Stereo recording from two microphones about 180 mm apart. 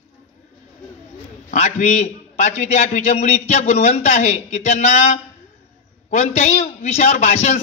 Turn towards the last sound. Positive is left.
turn(degrees=40)  # may be behind; listen again after turning